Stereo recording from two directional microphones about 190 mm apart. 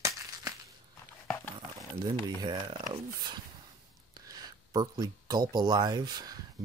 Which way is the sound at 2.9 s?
25° right (ahead or behind).